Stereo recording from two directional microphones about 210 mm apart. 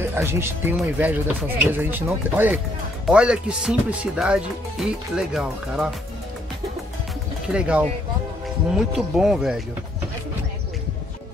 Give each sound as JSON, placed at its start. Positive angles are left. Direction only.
{"t": 0.0, "sound": "speech", "side_deg": -10}
{"t": 7.5, "sound": "speech", "side_deg": -5}